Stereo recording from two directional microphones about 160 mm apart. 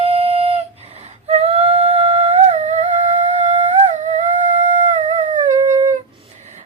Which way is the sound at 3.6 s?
50° right (ahead or behind).